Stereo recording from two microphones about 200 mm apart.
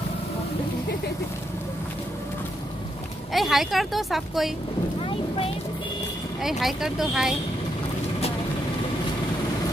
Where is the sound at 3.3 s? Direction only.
Centre (ahead or behind).